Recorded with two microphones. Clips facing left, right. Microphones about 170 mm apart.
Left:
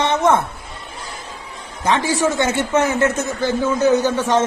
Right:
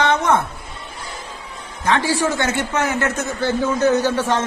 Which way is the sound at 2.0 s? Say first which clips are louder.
Left 2 dB; 20° left (ahead or behind).